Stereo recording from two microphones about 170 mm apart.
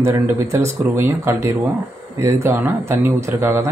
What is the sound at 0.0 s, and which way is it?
Speech, 15° right (ahead or behind).